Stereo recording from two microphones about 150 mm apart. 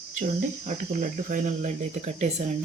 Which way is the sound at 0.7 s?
60° right (ahead or behind).